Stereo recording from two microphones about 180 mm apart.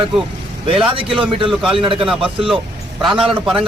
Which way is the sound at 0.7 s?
30° right (ahead or behind).